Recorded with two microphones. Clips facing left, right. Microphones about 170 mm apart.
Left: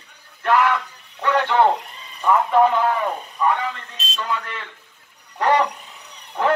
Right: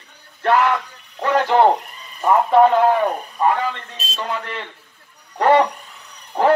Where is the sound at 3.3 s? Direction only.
35° right (ahead or behind).